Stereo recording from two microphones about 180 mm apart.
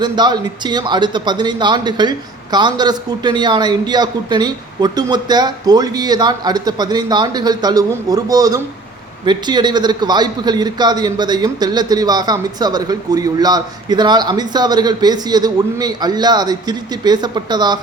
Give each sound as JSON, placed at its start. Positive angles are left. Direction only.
{"t": 0.0, "sound": "a man's voice", "side_deg": -25}